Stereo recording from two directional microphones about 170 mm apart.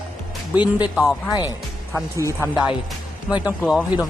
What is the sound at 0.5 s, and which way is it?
Speech, 25° left (ahead or behind).